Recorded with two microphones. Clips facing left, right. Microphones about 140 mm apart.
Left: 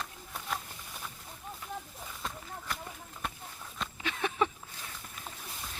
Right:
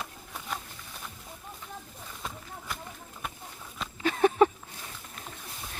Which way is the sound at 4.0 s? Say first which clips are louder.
Right 10 dB; 40° right (ahead or behind).